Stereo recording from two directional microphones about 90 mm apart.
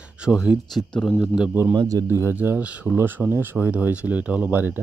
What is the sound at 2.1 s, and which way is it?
Speech, 25° right (ahead or behind).